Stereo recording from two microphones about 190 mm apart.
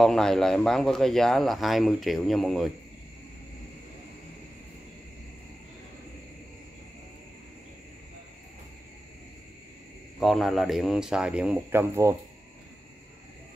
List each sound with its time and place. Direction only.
0.0 s speech: centre (ahead or behind)
10.2 s speech: centre (ahead or behind)